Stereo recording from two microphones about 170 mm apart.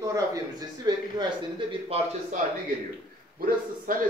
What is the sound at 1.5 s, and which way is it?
Speech, 35° right (ahead or behind).